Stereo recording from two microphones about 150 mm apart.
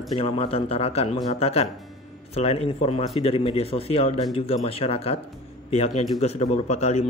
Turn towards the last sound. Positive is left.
turn(degrees=50)  # may be behind; listen again after turning